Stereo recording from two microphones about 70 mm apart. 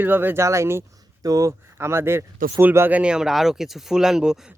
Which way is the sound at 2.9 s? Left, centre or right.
Centre.